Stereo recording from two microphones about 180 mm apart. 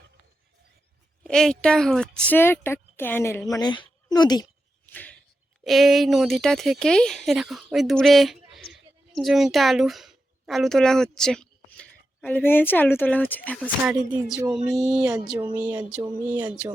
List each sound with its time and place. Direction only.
1.2 s speech: 5° left (ahead or behind)
3.5 s speech: 25° left (ahead or behind)
4.9 s a sound: 10° left (ahead or behind)
5.6 s speech: centre (ahead or behind)
13.8 s speech: 5° right (ahead or behind)